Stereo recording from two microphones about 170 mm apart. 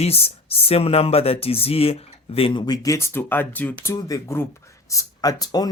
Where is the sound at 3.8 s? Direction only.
20° left (ahead or behind).